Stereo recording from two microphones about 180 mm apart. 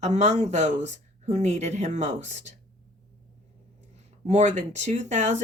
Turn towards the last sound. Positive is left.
turn(degrees=-40)  # may be behind; listen again after turning